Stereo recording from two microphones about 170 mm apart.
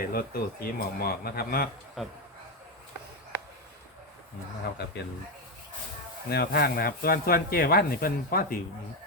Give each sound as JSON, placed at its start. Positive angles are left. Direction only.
{"t": 0.0, "sound": "speech", "side_deg": 60}
{"t": 2.0, "sound": "a man's voice", "side_deg": 0}
{"t": 6.2, "sound": "speech", "side_deg": 70}